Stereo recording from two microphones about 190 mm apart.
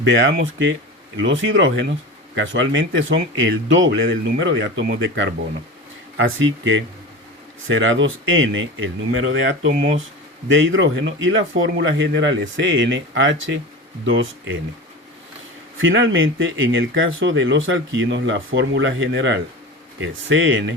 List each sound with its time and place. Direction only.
0.1 s speech: 75° right (ahead or behind)
6.2 s speech: 85° right
15.8 s speech: 80° right